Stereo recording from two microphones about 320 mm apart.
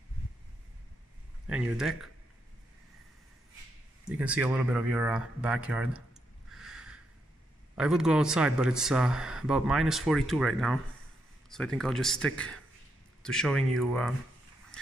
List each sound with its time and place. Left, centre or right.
1.5 s speech: centre
4.2 s speech: centre
6.5 s a sound: centre
7.7 s speech: centre